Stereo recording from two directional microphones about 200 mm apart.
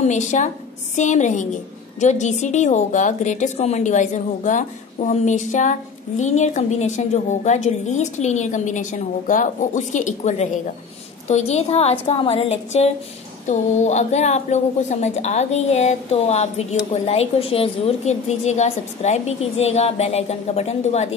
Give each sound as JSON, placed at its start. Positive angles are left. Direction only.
{"t": 0.0, "sound": "a woman's voice", "side_deg": 35}